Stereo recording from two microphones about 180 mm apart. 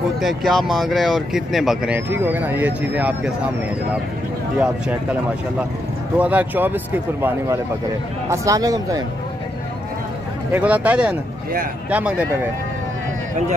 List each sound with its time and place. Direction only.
0.2 s speech: centre (ahead or behind)
6.1 s speech: 10° right (ahead or behind)
10.5 s speech: 10° right (ahead or behind)